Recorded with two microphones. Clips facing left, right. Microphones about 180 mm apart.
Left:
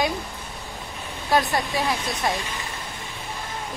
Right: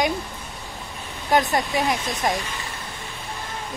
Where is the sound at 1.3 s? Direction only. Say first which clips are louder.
Right 2 dB; 20° right (ahead or behind).